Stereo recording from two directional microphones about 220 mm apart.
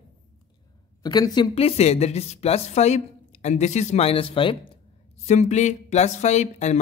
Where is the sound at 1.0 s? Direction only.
20° left (ahead or behind).